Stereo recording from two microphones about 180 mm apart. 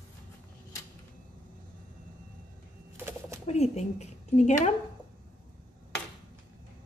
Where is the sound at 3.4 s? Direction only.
35° left (ahead or behind).